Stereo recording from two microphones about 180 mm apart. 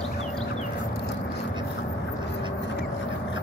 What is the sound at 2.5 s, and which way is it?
Vehicle, 75° left (ahead or behind).